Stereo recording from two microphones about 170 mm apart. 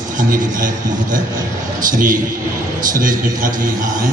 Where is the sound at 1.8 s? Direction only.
50° right (ahead or behind).